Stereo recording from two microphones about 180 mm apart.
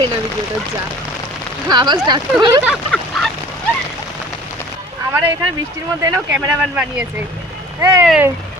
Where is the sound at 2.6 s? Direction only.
Centre (ahead or behind).